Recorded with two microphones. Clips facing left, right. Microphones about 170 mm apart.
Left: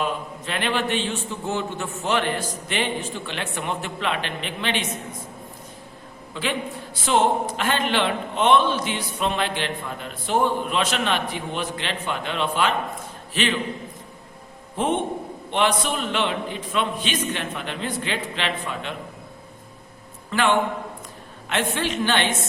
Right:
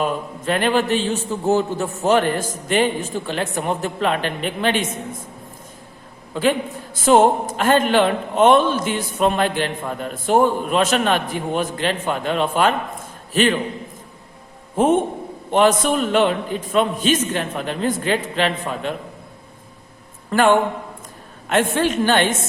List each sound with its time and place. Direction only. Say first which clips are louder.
0.0 s a man's voice: right 5 dB; 45° right (ahead or behind)
6.3 s a man's voice: right 8 dB; 45° right (ahead or behind)
14.8 s a man's voice: right 7 dB; 45° right (ahead or behind)
20.3 s a man's voice: right 5 dB; 45° right (ahead or behind)